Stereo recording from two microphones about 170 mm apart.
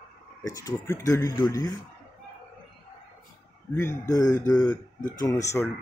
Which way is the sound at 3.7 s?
15° left (ahead or behind).